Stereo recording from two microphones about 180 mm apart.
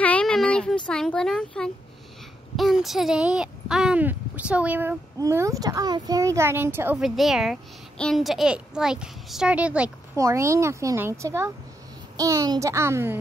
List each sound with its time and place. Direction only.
0.0 s a sound: 5° left (ahead or behind)
0.8 s a child's voice: 5° left (ahead or behind)
10.1 s speech: 15° right (ahead or behind)